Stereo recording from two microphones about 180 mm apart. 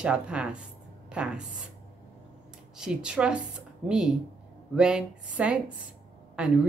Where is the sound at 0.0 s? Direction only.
5° right (ahead or behind).